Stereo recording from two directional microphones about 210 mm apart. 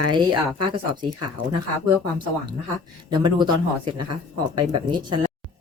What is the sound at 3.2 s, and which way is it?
A woman's voice, 20° right (ahead or behind).